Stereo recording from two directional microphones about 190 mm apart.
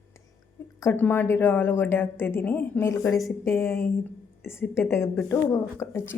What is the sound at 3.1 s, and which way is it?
Speech, centre (ahead or behind).